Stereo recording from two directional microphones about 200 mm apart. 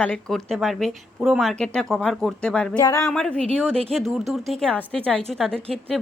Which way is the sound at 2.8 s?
15° left (ahead or behind).